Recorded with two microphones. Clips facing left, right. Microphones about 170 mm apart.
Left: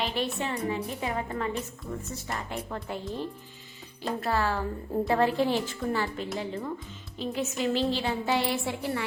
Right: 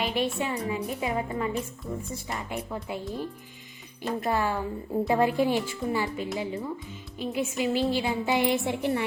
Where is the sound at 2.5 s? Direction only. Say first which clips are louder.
Right 1 dB; 10° right (ahead or behind).